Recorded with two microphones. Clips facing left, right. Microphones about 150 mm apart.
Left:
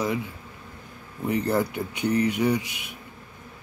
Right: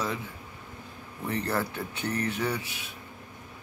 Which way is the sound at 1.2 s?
10° left (ahead or behind).